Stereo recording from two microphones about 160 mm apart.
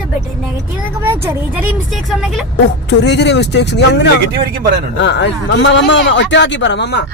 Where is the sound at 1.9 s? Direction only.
Centre (ahead or behind).